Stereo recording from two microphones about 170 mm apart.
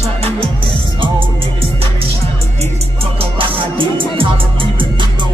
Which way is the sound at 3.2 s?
30° right (ahead or behind).